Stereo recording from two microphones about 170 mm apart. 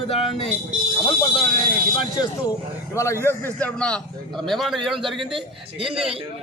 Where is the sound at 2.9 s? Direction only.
15° left (ahead or behind); by 6.0 s 5° right (ahead or behind).